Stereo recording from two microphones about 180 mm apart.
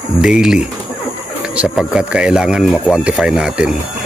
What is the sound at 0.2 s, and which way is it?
Speech, 5° right (ahead or behind).